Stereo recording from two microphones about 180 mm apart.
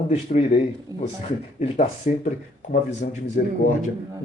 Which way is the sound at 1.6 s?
40° left (ahead or behind).